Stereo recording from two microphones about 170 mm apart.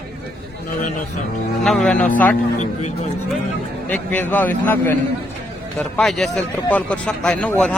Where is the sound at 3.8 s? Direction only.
10° left (ahead or behind).